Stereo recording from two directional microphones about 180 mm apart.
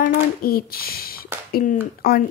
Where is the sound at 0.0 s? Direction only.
55° left (ahead or behind).